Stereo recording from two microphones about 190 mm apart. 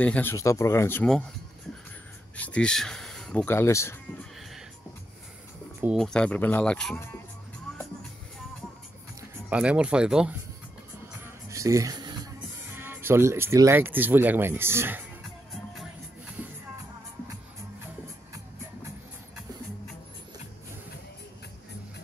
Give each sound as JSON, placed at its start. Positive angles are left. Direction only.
{"t": 0.0, "sound": "speech", "side_deg": 10}
{"t": 2.3, "sound": "speech", "side_deg": 5}
{"t": 4.4, "sound": "music", "side_deg": 0}
{"t": 5.9, "sound": "speech", "side_deg": 5}
{"t": 9.5, "sound": "speech", "side_deg": -5}
{"t": 11.4, "sound": "music", "side_deg": -15}
{"t": 12.7, "sound": "speech", "side_deg": -10}